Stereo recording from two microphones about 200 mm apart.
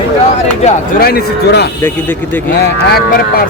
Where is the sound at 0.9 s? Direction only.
50° left (ahead or behind).